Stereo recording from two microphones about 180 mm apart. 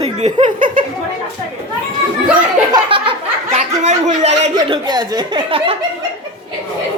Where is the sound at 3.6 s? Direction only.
40° right (ahead or behind).